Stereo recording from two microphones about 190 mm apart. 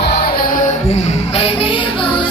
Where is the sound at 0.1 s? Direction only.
50° left (ahead or behind).